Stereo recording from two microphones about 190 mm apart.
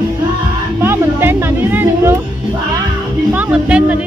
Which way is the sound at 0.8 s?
10° right (ahead or behind).